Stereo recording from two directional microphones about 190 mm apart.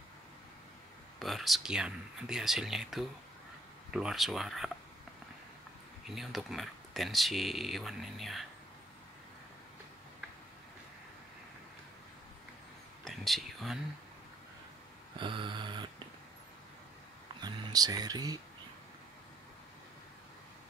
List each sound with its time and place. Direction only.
1.2 s speech: centre (ahead or behind)
6.0 s speech: centre (ahead or behind)
13.0 s whispering: centre (ahead or behind)
15.1 s speech: 25° right (ahead or behind)
17.4 s speech: 20° right (ahead or behind)